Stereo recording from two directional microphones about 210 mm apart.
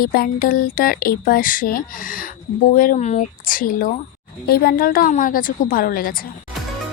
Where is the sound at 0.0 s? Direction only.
45° left (ahead or behind).